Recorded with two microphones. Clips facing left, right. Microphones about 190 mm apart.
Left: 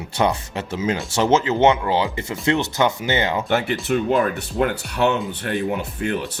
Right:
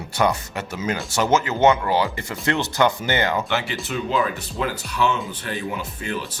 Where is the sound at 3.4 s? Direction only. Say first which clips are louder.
Left 5 dB; 50° left (ahead or behind).